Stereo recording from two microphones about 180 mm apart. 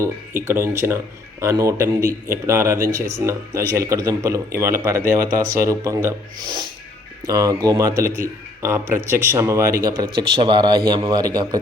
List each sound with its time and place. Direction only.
0.0 s speech: 15° right (ahead or behind)